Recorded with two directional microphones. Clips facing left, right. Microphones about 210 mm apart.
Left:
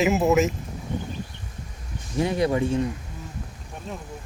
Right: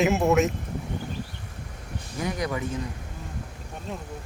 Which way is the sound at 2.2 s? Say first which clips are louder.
Left 7 dB; 30° left (ahead or behind).